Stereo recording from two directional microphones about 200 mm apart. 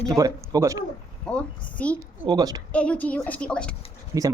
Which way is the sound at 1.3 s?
5° left (ahead or behind).